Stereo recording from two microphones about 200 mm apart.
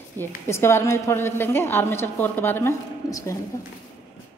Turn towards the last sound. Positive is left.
turn(degrees=15)  # may be behind; listen again after turning